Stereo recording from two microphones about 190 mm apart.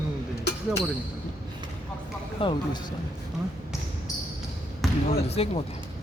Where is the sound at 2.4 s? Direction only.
30° left (ahead or behind).